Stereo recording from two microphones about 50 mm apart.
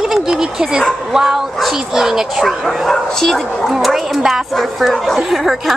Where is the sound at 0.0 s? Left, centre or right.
Centre.